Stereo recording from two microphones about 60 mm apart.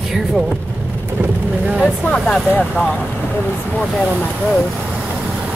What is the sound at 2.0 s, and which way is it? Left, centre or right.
Speech, centre.